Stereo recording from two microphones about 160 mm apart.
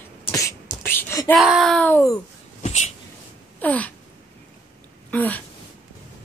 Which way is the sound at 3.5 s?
10° left (ahead or behind).